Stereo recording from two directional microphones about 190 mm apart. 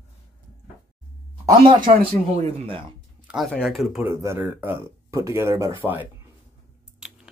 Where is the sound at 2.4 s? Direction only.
30° right (ahead or behind).